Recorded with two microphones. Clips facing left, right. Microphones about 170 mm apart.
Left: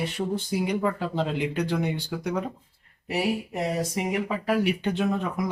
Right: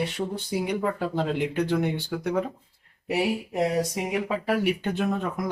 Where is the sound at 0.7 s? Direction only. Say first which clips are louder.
Even; centre (ahead or behind).